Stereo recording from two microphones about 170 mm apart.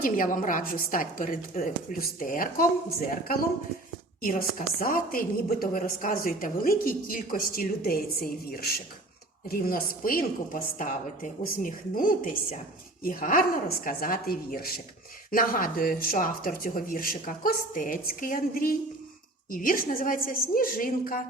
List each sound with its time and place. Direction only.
0.0 s a woman's voice: 55° left (ahead or behind)
4.2 s a woman's voice: 60° left (ahead or behind)